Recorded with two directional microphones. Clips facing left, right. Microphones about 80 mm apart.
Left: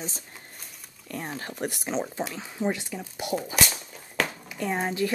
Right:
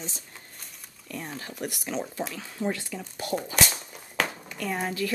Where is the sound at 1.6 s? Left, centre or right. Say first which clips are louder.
Left 3 dB; left.